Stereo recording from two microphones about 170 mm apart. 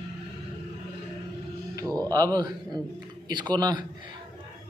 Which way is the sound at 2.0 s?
20° right (ahead or behind).